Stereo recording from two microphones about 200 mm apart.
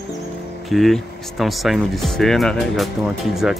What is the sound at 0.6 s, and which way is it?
Speech, centre (ahead or behind).